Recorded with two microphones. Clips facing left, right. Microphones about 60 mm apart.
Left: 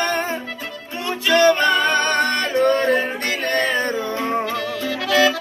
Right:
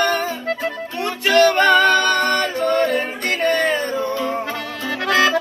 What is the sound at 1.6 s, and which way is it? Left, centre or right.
Music, right.